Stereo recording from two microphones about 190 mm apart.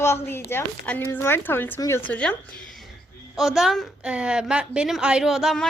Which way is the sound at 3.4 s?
Centre (ahead or behind).